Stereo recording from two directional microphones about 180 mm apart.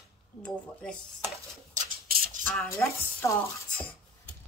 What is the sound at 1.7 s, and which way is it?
Rub, 50° right (ahead or behind).